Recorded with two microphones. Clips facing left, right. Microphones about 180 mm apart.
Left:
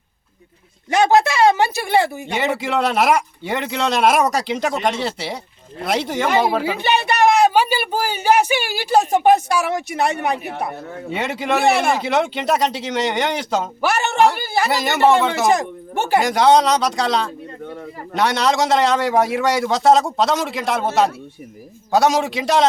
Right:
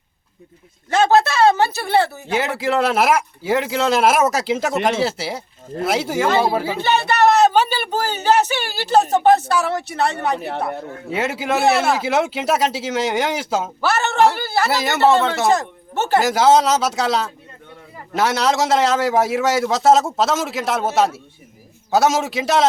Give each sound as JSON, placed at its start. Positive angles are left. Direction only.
{"t": 0.9, "sound": "speech", "side_deg": 15}
{"t": 2.3, "sound": "a man's voice", "side_deg": 0}
{"t": 6.2, "sound": "speech", "side_deg": 15}
{"t": 11.1, "sound": "a man's voice", "side_deg": -5}
{"t": 13.8, "sound": "speech", "side_deg": 15}
{"t": 14.7, "sound": "a man's voice", "side_deg": 0}
{"t": 14.9, "sound": "speech", "side_deg": 15}
{"t": 16.2, "sound": "a man's voice", "side_deg": -5}